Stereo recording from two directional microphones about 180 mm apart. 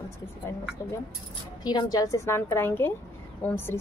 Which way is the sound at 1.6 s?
25° left (ahead or behind).